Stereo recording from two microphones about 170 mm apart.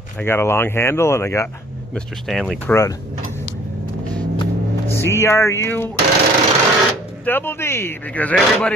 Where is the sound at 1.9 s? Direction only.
Centre (ahead or behind).